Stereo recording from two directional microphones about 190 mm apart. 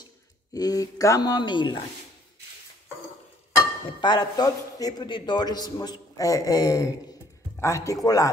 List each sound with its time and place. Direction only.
0.5 s a man's voice: 20° left (ahead or behind)
4.0 s a man's voice: 25° left (ahead or behind)